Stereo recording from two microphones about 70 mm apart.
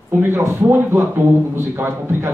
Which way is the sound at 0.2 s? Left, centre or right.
Right.